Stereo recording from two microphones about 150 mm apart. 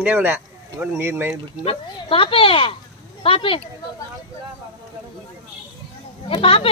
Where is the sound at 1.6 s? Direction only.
40° left (ahead or behind).